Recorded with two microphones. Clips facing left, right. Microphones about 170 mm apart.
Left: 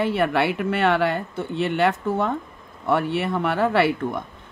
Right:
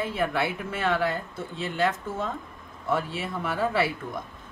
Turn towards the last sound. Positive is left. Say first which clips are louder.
# left 6 dB
turn(degrees=70)  # may be behind; listen again after turning